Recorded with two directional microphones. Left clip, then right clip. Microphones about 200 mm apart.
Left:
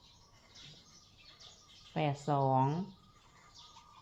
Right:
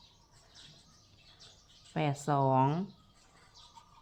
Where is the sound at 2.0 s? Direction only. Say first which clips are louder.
Right 2 dB; 20° right (ahead or behind).